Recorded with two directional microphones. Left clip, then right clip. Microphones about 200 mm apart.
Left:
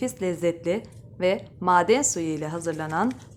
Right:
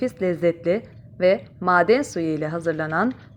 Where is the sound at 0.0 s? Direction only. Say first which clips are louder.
Right 4 dB; 10° right (ahead or behind).